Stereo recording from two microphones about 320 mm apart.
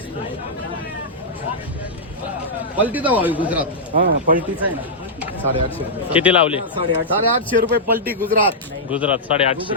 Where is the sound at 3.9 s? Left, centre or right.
Right.